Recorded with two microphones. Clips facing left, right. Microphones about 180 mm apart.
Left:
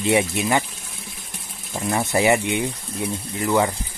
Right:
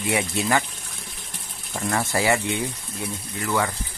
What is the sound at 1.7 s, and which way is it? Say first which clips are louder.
Speech: left 3 dB; 15° left (ahead or behind).